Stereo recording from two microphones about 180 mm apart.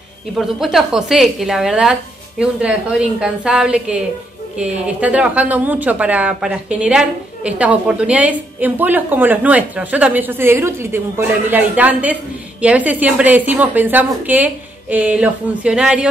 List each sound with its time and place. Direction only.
0.3 s a woman's voice: centre (ahead or behind)